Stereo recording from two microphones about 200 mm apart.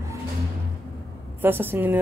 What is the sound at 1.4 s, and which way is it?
Speech, 10° right (ahead or behind).